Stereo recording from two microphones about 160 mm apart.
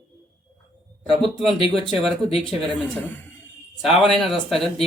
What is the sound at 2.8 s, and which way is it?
Speech, 10° left (ahead or behind).